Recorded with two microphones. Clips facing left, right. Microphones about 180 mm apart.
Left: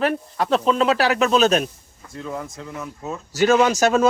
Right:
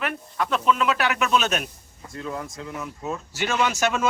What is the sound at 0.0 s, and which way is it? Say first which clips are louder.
Speech: left 6 dB; 35° left (ahead or behind).